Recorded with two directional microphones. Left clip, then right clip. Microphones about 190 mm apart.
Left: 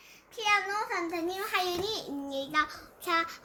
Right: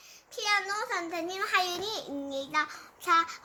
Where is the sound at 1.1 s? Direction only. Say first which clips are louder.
Right 2 dB; 5° right (ahead or behind).